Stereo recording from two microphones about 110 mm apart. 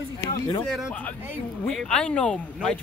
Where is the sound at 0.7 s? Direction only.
5° right (ahead or behind).